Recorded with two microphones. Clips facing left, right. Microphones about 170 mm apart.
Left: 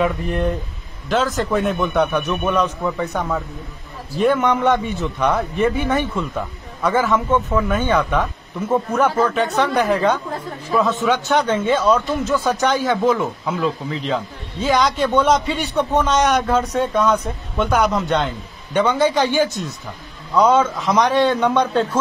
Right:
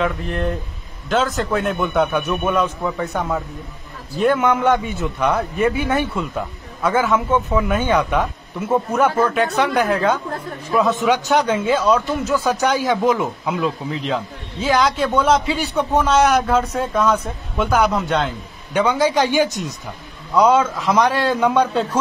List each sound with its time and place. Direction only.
0.0 s a man's voice: centre (ahead or behind)
7.3 s a man's voice: 15° right (ahead or behind)
10.7 s speech: 15° right (ahead or behind)
13.8 s a man's voice: centre (ahead or behind)